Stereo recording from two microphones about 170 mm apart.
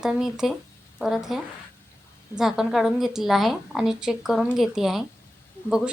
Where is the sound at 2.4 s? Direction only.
Centre (ahead or behind).